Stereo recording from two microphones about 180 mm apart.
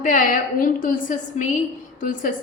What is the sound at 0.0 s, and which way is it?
A woman's voice, 45° left (ahead or behind).